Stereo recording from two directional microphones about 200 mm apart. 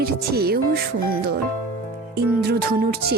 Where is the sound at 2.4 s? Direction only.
50° right (ahead or behind).